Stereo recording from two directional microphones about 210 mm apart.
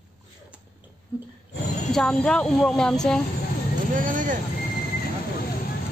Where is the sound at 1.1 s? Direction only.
10° right (ahead or behind).